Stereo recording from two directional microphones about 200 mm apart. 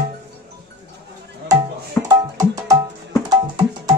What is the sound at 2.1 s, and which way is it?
Music, 20° right (ahead or behind).